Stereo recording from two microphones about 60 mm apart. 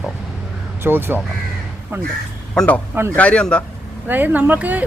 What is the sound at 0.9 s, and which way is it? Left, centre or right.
Speech, right.